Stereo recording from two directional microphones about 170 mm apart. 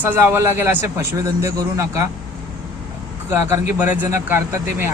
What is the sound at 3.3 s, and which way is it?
Speech, 10° right (ahead or behind).